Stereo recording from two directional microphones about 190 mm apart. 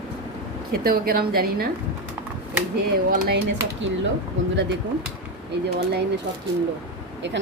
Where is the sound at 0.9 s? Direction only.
50° right (ahead or behind).